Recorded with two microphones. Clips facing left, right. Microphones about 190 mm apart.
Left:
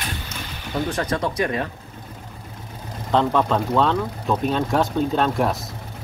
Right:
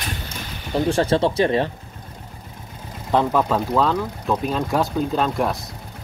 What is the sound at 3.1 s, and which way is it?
Speech, 5° right (ahead or behind).